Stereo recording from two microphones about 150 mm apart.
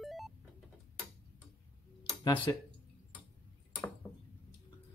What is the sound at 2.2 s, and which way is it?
Speech, 30° left (ahead or behind).